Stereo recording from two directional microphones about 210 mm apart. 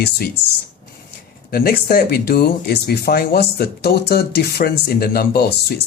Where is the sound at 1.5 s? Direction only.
45° left (ahead or behind).